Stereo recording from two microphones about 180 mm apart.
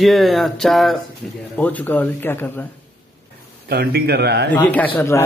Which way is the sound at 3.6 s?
60° right (ahead or behind).